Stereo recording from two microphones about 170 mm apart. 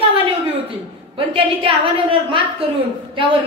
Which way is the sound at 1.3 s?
30° right (ahead or behind).